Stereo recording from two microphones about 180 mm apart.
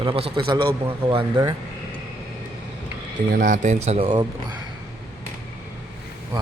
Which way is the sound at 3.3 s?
45° right (ahead or behind).